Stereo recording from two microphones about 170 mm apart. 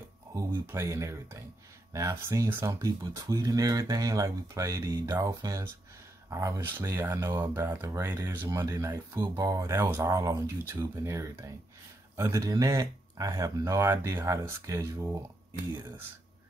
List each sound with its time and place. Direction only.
0.3 s speech: 15° right (ahead or behind)